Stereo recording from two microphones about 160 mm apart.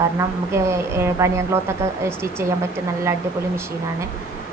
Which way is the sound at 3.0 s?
15° right (ahead or behind).